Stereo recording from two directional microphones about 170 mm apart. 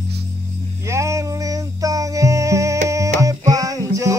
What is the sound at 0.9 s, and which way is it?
Music, 15° right (ahead or behind).